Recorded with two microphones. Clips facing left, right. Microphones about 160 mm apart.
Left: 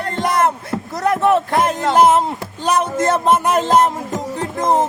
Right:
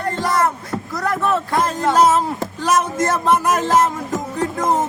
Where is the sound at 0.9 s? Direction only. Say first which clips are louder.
Left 5 dB; 20° left (ahead or behind).